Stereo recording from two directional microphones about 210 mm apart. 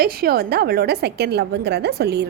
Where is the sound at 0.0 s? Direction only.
45° right (ahead or behind).